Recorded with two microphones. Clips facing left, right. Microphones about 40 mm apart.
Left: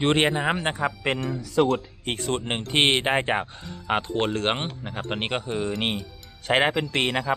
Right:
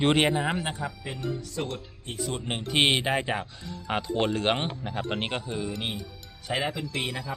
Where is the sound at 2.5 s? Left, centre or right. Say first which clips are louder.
Left 1 dB; left.